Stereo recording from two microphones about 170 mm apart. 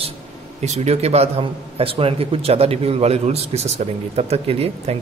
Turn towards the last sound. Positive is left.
turn(degrees=-35)  # may be behind; listen again after turning